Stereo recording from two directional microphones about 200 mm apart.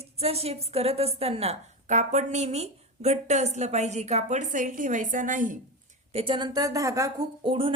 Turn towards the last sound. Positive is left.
turn(degrees=-25)  # may be behind; listen again after turning